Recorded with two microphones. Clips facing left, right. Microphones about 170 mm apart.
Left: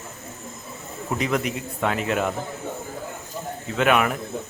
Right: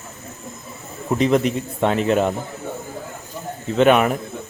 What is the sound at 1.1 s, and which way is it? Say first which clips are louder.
Speech: right 7 dB; 25° right (ahead or behind).